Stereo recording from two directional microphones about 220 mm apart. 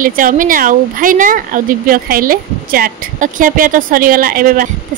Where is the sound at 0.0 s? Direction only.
40° right (ahead or behind).